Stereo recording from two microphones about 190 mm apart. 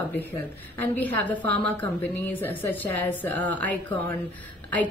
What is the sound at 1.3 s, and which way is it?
Speech, 60° right (ahead or behind).